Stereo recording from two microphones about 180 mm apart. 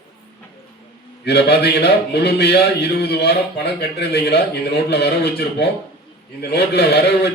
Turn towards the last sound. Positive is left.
turn(degrees=65)  # may be behind; listen again after turning